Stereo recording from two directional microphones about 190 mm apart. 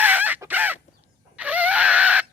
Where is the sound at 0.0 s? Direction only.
10° right (ahead or behind).